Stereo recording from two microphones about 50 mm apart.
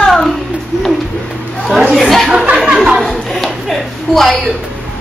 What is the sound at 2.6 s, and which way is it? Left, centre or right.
Speech, centre.